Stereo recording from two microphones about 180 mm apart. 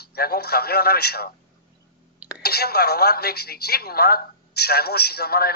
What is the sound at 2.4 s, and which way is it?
A woman's voice, 60° left (ahead or behind).